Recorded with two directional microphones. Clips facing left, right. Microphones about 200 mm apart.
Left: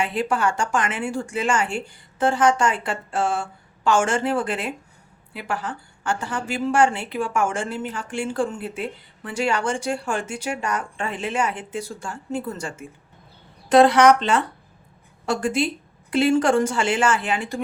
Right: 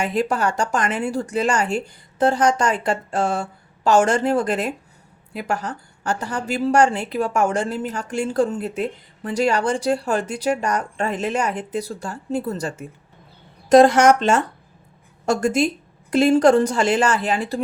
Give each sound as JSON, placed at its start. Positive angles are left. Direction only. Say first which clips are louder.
{"t": 0.0, "sound": "a woman's voice", "louder": "right 2 dB", "side_deg": -40}